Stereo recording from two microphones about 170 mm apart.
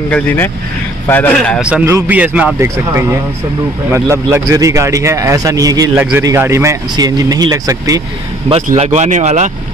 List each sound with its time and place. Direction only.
0.1 s a man's voice: 10° left (ahead or behind)
1.6 s a man's voice: 5° right (ahead or behind)
5.9 s a man's voice: 10° right (ahead or behind)
8.6 s speech: 40° right (ahead or behind)